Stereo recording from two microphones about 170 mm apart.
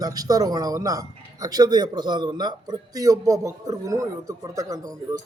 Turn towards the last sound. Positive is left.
turn(degrees=-20)  # may be behind; listen again after turning